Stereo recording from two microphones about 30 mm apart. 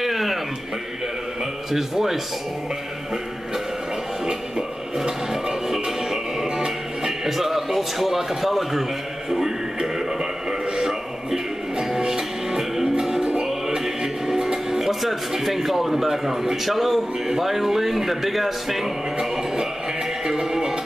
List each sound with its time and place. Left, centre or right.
0.0 s music: centre
1.7 s speech: centre
4.3 s music: right
7.2 s speech: centre
9.8 s music: centre
10.8 s a sound: centre
11.8 s music: centre
17.4 s speech: centre
19.1 s music: centre